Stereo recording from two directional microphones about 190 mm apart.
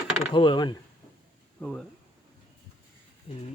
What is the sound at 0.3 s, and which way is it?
Speech, 25° left (ahead or behind).